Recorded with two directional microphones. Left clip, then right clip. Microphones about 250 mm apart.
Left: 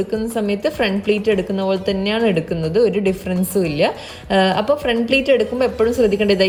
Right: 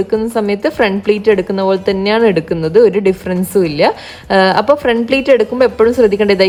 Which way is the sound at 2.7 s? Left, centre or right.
Right.